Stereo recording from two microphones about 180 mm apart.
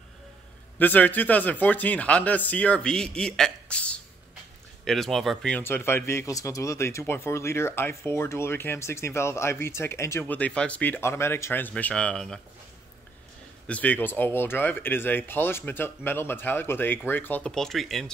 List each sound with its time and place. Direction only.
0.7 s speech: 10° left (ahead or behind)
13.7 s speech: 10° left (ahead or behind)